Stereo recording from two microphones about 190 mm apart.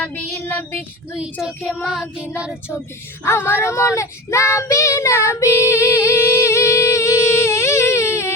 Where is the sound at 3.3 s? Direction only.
10° left (ahead or behind).